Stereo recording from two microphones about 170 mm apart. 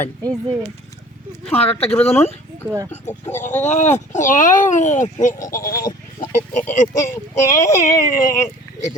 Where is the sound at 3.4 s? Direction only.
45° left (ahead or behind).